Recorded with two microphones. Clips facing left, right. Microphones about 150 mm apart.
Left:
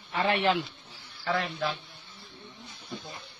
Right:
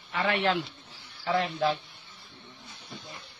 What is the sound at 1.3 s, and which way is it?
Speech, 30° right (ahead or behind).